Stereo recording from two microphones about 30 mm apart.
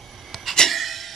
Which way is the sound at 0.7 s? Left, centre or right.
Centre.